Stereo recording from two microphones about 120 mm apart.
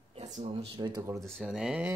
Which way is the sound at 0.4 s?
55° right (ahead or behind).